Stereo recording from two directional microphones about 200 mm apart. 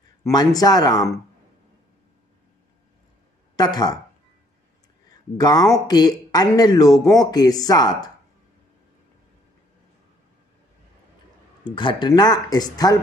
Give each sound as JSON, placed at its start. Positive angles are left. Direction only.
{"t": 0.2, "sound": "speech", "side_deg": 20}
{"t": 3.5, "sound": "speech", "side_deg": 20}
{"t": 5.4, "sound": "speech", "side_deg": 20}
{"t": 11.7, "sound": "speech", "side_deg": 25}